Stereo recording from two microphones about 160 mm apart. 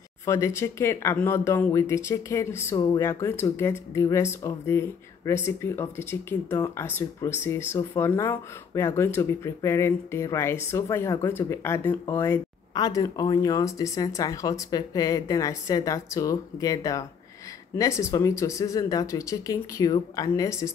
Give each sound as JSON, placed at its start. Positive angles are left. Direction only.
{"t": 0.2, "sound": "speech", "side_deg": 20}